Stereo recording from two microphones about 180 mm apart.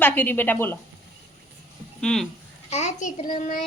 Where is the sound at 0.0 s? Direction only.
10° left (ahead or behind).